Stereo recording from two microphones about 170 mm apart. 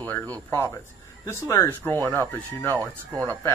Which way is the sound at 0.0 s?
10° left (ahead or behind).